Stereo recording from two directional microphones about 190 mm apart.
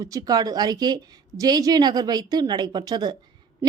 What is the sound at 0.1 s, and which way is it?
A woman's voice, 20° right (ahead or behind).